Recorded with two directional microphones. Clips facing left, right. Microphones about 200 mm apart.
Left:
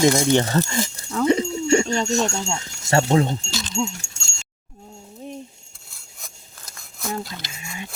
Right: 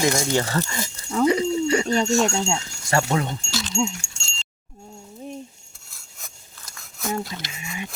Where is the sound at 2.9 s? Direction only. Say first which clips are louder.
Left 4 dB; 25° left (ahead or behind).